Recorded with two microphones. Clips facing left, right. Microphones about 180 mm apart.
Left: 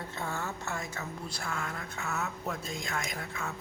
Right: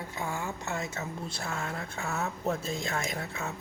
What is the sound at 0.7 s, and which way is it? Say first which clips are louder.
A woman's voice: right 3 dB; 25° right (ahead or behind).